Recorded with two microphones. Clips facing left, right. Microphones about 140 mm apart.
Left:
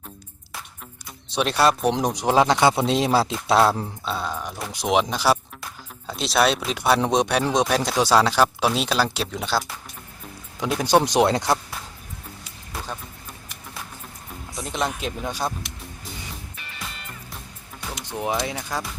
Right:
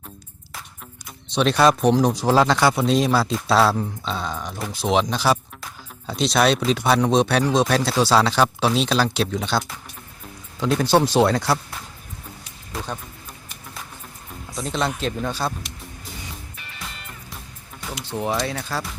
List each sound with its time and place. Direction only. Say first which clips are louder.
1.3 s speech: right 3 dB; 10° left (ahead or behind)
1.9 s speech: right 4 dB; 20° left (ahead or behind)
4.0 s speech: even; 5° left (ahead or behind)
10.6 s speech: right 1 dB; 15° left (ahead or behind)
14.6 s speech: right 3 dB; 10° left (ahead or behind)
16.6 s music: even; centre (ahead or behind)
18.0 s speech: right 1 dB; 15° left (ahead or behind)